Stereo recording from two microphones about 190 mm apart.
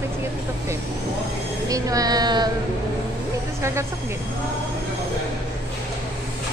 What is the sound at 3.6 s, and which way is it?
Speech, 15° right (ahead or behind).